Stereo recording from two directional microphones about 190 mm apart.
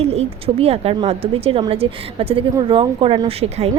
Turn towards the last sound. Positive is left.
turn(degrees=-35)  # may be behind; listen again after turning